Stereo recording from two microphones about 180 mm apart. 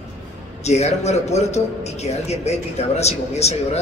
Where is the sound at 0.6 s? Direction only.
40° left (ahead or behind).